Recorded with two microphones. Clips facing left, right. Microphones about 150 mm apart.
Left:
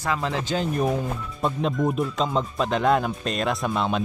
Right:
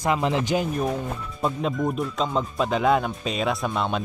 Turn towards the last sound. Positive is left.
turn(degrees=0)  # may be behind; listen again after turning